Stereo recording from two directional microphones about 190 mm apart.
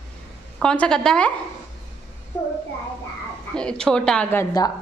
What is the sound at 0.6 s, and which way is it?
Speech, 5° left (ahead or behind).